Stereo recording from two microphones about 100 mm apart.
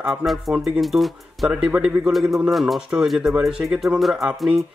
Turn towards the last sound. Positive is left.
turn(degrees=0)  # may be behind; listen again after turning